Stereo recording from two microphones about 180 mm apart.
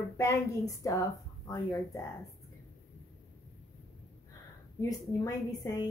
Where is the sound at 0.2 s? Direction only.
15° left (ahead or behind).